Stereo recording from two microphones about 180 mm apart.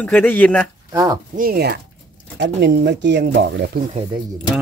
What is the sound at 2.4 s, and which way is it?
Speech, 70° right (ahead or behind).